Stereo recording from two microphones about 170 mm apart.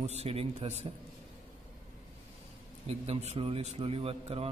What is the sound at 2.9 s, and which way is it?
A man's voice, 35° right (ahead or behind).